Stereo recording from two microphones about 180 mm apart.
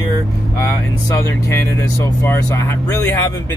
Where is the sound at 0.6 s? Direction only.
15° left (ahead or behind).